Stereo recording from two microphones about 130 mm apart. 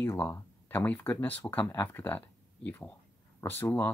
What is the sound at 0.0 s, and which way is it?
Speech, 15° left (ahead or behind).